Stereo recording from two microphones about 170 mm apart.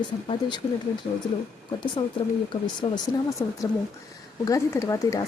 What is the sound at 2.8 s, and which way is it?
A woman's voice, 30° left (ahead or behind).